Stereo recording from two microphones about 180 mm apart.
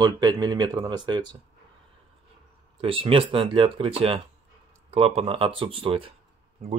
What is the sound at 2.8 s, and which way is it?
Speech, 30° right (ahead or behind).